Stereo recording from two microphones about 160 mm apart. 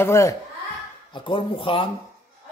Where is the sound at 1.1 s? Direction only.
30° left (ahead or behind).